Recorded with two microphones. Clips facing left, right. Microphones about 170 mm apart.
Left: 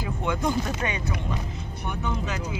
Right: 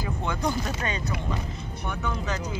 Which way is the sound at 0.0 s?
15° left (ahead or behind).